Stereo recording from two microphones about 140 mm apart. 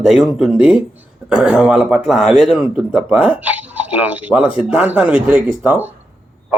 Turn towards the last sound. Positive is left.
turn(degrees=-15)  # may be behind; listen again after turning